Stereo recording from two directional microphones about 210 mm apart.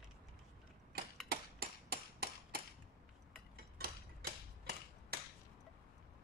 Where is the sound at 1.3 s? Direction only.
45° right (ahead or behind).